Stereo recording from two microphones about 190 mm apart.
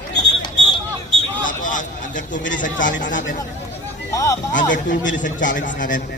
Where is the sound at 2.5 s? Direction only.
45° left (ahead or behind).